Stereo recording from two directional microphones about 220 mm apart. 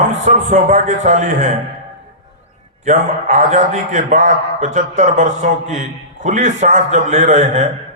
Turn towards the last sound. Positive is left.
turn(degrees=-35)  # may be behind; listen again after turning